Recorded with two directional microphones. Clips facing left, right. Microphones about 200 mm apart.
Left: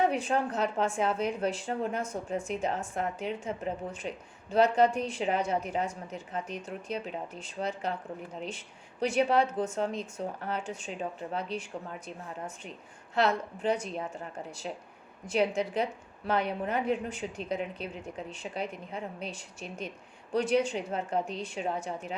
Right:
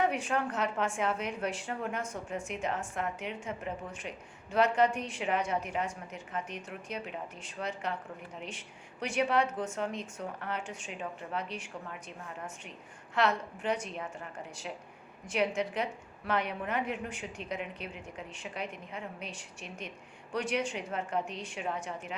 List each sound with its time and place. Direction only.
0.0 s a woman's voice: 35° left (ahead or behind)
9.0 s a woman's voice: 30° left (ahead or behind)
13.1 s a woman's voice: 35° left (ahead or behind)
20.3 s a woman's voice: 35° left (ahead or behind)